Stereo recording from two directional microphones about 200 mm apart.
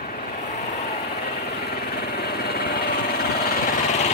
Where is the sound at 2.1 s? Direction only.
50° left (ahead or behind).